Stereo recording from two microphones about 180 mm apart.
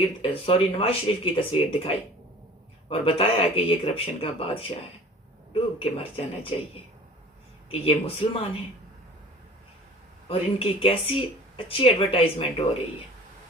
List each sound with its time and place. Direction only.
0.2 s speech: 30° left (ahead or behind)
2.9 s speech: 30° left (ahead or behind)
7.7 s speech: 30° left (ahead or behind)
10.2 s speech: 30° left (ahead or behind)